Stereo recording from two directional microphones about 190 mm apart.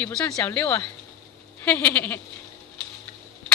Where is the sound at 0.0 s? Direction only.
10° left (ahead or behind).